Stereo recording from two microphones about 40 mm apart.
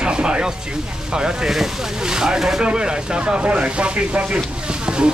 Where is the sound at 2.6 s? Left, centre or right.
Right.